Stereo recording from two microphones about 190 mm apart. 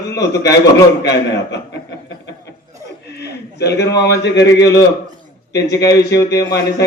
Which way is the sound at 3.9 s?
65° left (ahead or behind).